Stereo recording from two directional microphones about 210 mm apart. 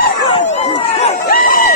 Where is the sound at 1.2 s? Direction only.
40° left (ahead or behind).